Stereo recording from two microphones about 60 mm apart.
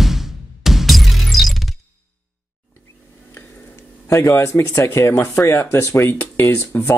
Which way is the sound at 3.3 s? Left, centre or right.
Left.